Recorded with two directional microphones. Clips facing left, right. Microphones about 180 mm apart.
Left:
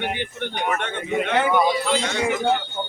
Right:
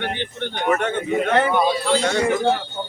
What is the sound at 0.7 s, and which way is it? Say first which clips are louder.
Speech: right 7 dB; 40° right (ahead or behind).